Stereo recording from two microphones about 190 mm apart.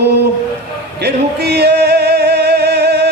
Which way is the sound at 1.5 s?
60° right (ahead or behind).